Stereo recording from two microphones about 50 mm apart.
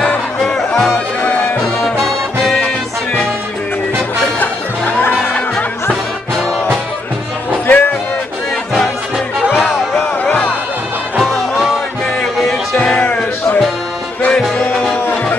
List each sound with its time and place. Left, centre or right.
0.4 s music: centre
0.9 s music: left
1.8 s music: centre
4.4 s music: left
7.6 s music: left
9.7 s a sound: centre
11.1 s music: centre
12.2 s music: centre
13.0 s music: left